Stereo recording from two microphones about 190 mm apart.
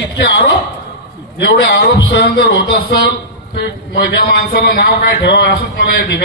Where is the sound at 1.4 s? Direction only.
65° left (ahead or behind).